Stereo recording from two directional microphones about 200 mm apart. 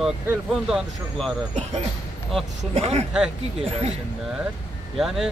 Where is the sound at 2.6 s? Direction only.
30° right (ahead or behind).